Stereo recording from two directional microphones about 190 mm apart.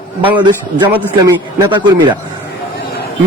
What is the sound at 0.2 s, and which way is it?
Speech, 25° right (ahead or behind).